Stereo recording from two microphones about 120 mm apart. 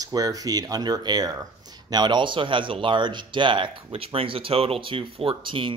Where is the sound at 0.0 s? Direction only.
30° right (ahead or behind).